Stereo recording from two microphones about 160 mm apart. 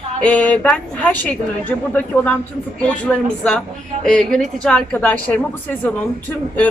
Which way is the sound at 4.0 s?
5° left (ahead or behind).